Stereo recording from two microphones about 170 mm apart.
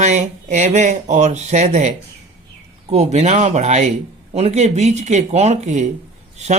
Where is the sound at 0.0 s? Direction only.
45° right (ahead or behind).